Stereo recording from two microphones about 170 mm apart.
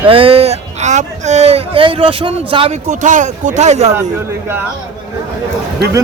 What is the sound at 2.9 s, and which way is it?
Speech, 50° right (ahead or behind).